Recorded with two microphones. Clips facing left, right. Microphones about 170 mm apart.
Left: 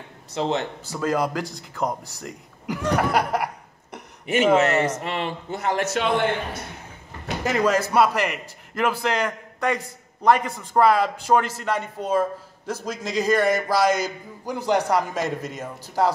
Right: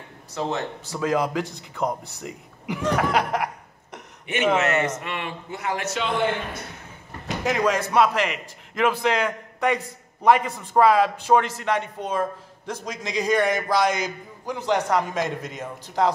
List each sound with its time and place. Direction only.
0.3 s a man's voice: 20° left (ahead or behind)
0.9 s a man's voice: centre (ahead or behind)
2.8 s chuckle: 5° left (ahead or behind)
4.6 s a man's voice: 35° left (ahead or behind); by 6.2 s 55° left (ahead or behind)
7.4 s a man's voice: 5° left (ahead or behind)